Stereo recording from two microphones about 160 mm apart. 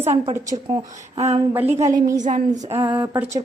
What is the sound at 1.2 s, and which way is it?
Speech, 40° right (ahead or behind).